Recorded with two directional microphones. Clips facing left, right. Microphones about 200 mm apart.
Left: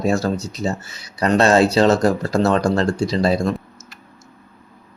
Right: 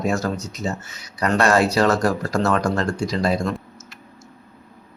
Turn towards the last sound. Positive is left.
turn(degrees=30)  # may be behind; listen again after turning